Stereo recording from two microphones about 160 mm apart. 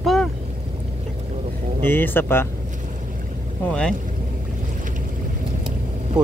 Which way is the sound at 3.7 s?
5° left (ahead or behind).